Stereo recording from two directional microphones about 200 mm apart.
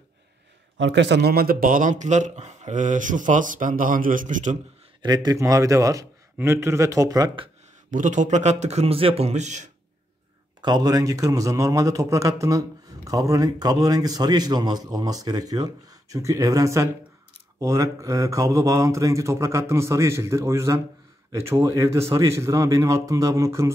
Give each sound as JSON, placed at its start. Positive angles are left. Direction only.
{"t": 0.7, "sound": "a man's voice", "side_deg": -65}
{"t": 5.0, "sound": "a man's voice", "side_deg": -20}
{"t": 7.9, "sound": "a man's voice", "side_deg": -40}
{"t": 10.6, "sound": "a man's voice", "side_deg": -20}